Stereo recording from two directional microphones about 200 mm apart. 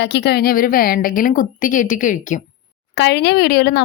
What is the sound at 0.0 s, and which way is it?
Speech, 55° left (ahead or behind).